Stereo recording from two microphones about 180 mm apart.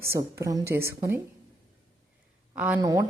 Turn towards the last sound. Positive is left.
turn(degrees=-20)  # may be behind; listen again after turning